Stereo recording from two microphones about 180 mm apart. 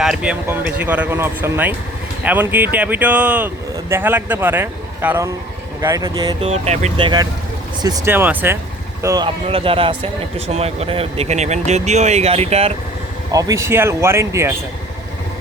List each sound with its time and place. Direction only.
0.0 s speech: 5° right (ahead or behind); by 6.3 s 20° right (ahead or behind)
6.4 s speech: 35° right (ahead or behind)
13.3 s speech: 15° right (ahead or behind)